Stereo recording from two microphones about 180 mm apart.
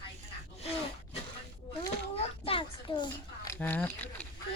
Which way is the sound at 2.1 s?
30° left (ahead or behind).